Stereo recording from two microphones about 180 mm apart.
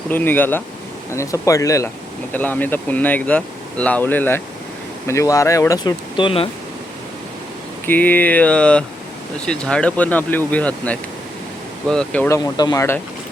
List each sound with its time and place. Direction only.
0.1 s speech: 10° left (ahead or behind); by 6.5 s 30° left (ahead or behind)
7.9 s speech: 10° left (ahead or behind)
12.5 s speech: 20° left (ahead or behind)